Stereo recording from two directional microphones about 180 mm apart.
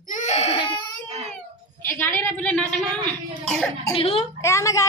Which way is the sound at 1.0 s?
35° right (ahead or behind).